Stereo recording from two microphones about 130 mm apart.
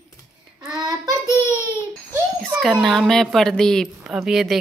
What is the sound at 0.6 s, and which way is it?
Child singing, 30° right (ahead or behind).